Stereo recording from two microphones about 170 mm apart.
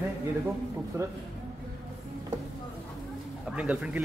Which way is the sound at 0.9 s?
15° right (ahead or behind).